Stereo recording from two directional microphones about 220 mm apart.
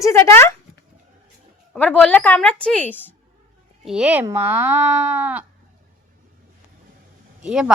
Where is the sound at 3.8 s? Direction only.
5° right (ahead or behind).